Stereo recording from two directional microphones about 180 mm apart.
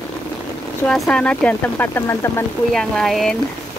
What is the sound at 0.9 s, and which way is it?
Speech, 5° left (ahead or behind).